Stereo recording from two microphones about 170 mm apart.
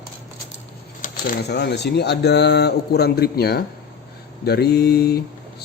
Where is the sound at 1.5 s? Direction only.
75° left (ahead or behind).